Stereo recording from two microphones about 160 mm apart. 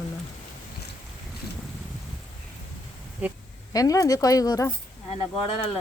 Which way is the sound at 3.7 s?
20° left (ahead or behind).